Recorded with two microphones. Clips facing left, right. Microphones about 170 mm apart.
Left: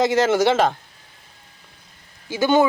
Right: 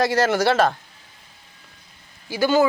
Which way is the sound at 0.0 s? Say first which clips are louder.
Left 2 dB; 20° left (ahead or behind).